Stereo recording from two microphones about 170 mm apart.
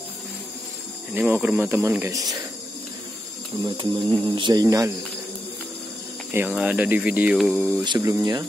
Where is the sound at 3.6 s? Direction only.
30° right (ahead or behind).